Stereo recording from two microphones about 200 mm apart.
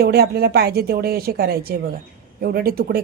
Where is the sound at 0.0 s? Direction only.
50° right (ahead or behind).